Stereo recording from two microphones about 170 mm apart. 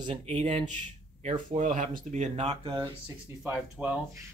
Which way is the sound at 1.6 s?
50° right (ahead or behind).